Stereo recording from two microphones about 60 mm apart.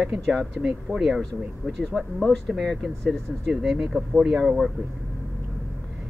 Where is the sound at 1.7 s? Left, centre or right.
Centre.